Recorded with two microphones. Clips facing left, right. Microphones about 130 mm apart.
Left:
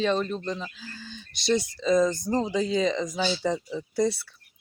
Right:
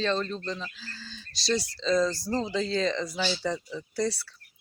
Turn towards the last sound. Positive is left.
turn(degrees=20)  # may be behind; listen again after turning